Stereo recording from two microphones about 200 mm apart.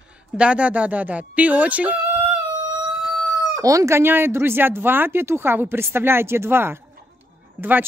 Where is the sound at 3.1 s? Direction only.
15° right (ahead or behind).